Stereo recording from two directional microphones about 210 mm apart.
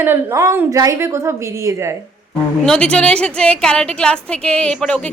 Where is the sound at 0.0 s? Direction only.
10° right (ahead or behind).